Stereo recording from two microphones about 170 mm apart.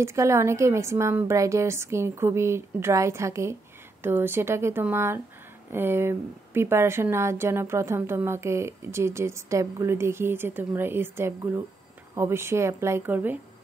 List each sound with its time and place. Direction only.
0.0 s a woman's voice: 15° right (ahead or behind)